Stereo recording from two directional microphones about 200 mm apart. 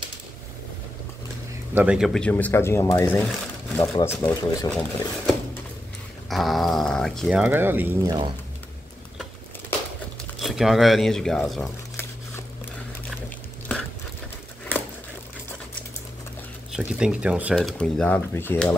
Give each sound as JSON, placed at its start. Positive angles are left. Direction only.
{"t": 1.8, "sound": "speech", "side_deg": -5}
{"t": 4.6, "sound": "speech", "side_deg": 5}
{"t": 6.3, "sound": "speech", "side_deg": 0}
{"t": 10.4, "sound": "speech", "side_deg": 0}
{"t": 16.7, "sound": "speech", "side_deg": -5}